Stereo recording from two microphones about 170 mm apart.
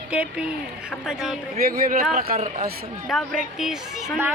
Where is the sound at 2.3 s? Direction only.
40° right (ahead or behind).